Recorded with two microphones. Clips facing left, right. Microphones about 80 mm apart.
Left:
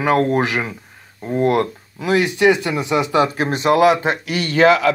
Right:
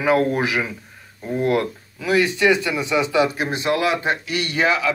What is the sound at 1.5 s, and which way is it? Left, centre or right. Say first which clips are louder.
Speech: left 3 dB; left.